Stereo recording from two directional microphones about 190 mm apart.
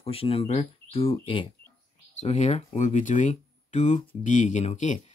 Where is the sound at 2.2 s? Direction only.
35° left (ahead or behind).